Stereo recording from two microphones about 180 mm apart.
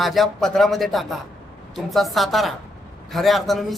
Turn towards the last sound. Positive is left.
turn(degrees=0)  # may be behind; listen again after turning